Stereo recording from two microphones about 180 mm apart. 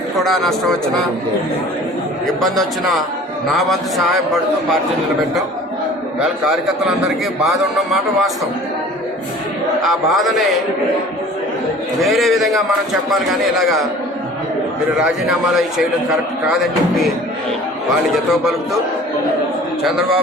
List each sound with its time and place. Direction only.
0.2 s a man's voice: centre (ahead or behind)
2.2 s a man's voice: centre (ahead or behind)
9.8 s a man's voice: centre (ahead or behind)
12.0 s a man's voice: centre (ahead or behind)
18.1 s a man's voice: centre (ahead or behind)